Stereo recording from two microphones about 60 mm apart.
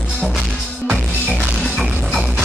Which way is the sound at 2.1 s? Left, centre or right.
Centre.